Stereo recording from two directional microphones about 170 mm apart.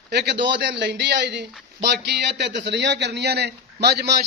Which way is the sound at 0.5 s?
90° right.